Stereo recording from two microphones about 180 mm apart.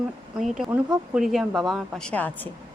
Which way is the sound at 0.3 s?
Centre (ahead or behind).